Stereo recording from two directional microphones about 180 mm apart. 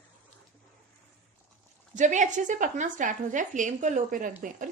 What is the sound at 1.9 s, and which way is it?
A woman's voice, 45° right (ahead or behind).